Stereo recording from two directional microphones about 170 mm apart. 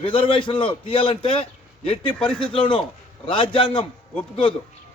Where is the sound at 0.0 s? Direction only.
30° left (ahead or behind).